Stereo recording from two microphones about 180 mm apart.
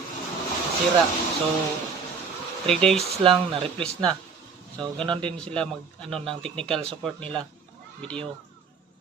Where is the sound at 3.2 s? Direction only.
30° right (ahead or behind).